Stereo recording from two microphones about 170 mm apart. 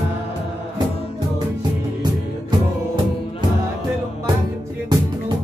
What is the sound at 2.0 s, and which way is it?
Music, 25° right (ahead or behind).